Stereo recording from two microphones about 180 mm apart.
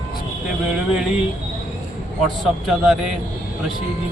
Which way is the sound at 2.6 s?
Centre (ahead or behind).